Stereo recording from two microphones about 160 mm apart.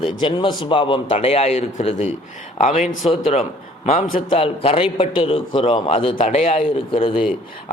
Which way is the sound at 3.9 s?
60° left (ahead or behind).